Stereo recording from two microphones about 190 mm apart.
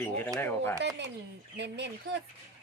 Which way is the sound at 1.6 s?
65° right (ahead or behind).